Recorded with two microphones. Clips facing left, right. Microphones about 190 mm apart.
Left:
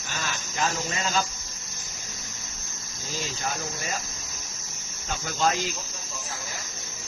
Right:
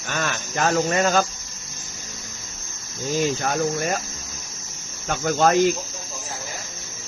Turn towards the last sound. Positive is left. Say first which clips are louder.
# right 8 dB
turn(degrees=-55)  # may be behind; listen again after turning